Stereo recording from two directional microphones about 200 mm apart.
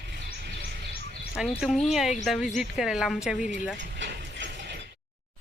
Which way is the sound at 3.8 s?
65° right (ahead or behind).